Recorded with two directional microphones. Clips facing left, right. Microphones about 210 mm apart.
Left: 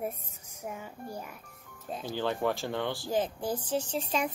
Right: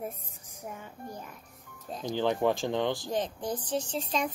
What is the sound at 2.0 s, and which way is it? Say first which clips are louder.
Speech: right 4 dB; 15° right (ahead or behind).